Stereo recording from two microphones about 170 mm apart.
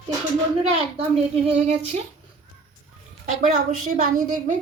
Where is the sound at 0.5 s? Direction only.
35° right (ahead or behind).